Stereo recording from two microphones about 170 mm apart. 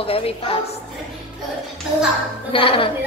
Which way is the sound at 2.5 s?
30° left (ahead or behind).